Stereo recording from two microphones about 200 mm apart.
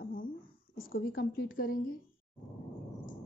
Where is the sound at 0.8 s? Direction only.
45° left (ahead or behind).